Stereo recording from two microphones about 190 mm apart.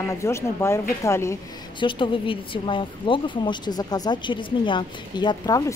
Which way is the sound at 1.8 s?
25° left (ahead or behind).